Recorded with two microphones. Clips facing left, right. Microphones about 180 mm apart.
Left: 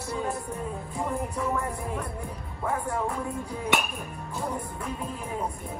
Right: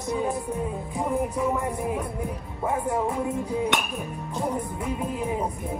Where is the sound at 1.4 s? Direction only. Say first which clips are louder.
Right 4 dB; 15° right (ahead or behind).